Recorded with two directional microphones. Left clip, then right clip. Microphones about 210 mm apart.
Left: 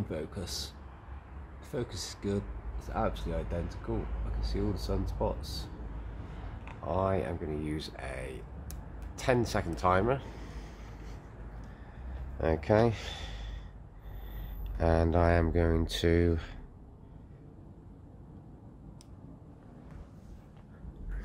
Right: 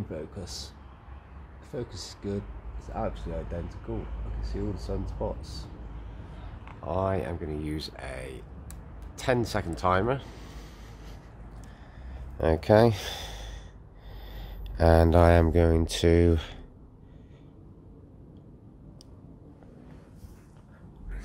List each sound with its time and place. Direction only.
0.1 s speech: centre (ahead or behind)
1.7 s speech: centre (ahead or behind)
6.8 s speech: 30° right (ahead or behind)
12.4 s speech: 40° right (ahead or behind)
14.8 s speech: 45° right (ahead or behind)